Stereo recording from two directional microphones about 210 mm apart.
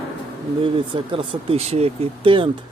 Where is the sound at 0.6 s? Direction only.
25° right (ahead or behind).